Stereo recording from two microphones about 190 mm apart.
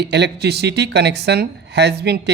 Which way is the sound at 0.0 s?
60° right (ahead or behind).